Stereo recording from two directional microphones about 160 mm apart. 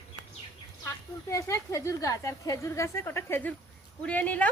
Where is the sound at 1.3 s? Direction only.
20° left (ahead or behind).